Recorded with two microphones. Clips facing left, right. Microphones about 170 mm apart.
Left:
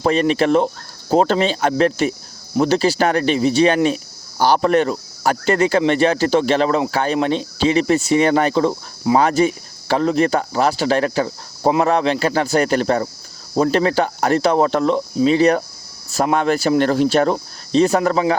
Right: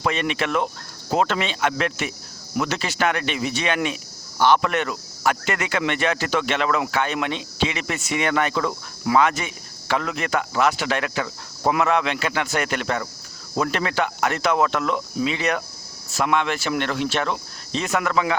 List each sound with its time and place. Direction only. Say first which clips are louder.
0.0 s speech: left 8 dB; 35° left (ahead or behind)